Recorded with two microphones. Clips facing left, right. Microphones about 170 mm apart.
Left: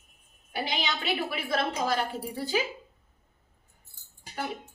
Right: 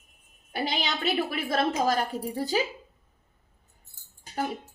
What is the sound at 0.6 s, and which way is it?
A woman's voice, 45° right (ahead or behind).